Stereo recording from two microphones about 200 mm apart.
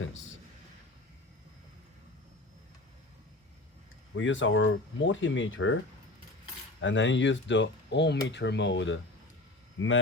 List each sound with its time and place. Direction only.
4.1 s speech: 70° left (ahead or behind)
6.8 s speech: 70° left (ahead or behind)